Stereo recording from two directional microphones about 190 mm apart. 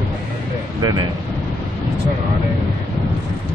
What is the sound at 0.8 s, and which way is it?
Speech, 25° right (ahead or behind).